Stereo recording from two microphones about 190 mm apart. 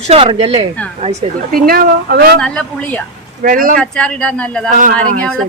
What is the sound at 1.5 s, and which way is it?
Speech, 50° right (ahead or behind).